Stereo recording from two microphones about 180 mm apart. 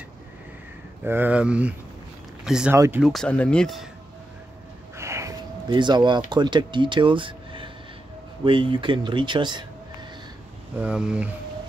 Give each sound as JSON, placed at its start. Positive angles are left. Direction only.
{"t": 1.0, "sound": "speech", "side_deg": -10}
{"t": 2.7, "sound": "speech", "side_deg": -15}
{"t": 3.0, "sound": "speech", "side_deg": 0}
{"t": 4.9, "sound": "snort", "side_deg": -15}
{"t": 5.7, "sound": "speech", "side_deg": -25}
{"t": 10.8, "sound": "speech", "side_deg": -5}